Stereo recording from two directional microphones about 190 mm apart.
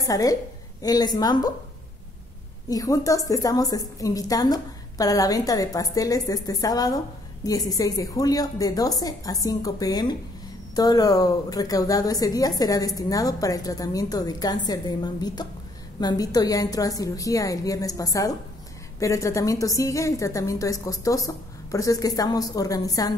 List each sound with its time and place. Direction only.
0.0 s a woman's voice: 20° left (ahead or behind)
2.7 s a woman's voice: 20° left (ahead or behind)